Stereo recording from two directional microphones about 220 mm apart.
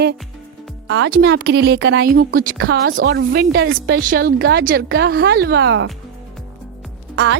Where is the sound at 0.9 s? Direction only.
50° right (ahead or behind).